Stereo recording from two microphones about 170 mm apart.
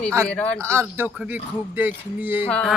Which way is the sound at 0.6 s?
15° right (ahead or behind).